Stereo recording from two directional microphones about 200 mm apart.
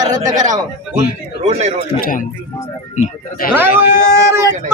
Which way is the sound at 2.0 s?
45° left (ahead or behind).